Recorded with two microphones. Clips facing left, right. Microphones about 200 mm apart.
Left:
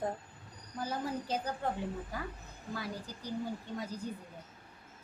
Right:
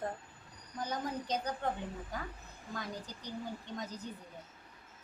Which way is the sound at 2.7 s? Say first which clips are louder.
Left 2 dB; 5° left (ahead or behind).